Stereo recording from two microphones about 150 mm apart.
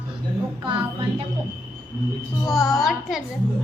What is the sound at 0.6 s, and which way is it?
Speech, 35° right (ahead or behind).